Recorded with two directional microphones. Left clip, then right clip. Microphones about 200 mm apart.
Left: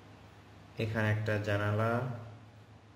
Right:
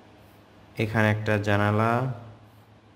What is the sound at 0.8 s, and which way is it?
A man's voice, 35° right (ahead or behind).